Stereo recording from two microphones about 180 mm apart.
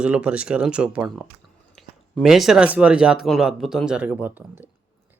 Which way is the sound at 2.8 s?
5° right (ahead or behind).